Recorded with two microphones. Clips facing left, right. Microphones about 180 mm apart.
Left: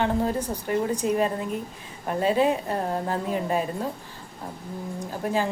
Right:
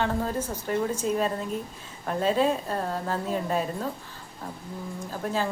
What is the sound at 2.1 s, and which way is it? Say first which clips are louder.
A woman's voice: left 2 dB; 10° left (ahead or behind).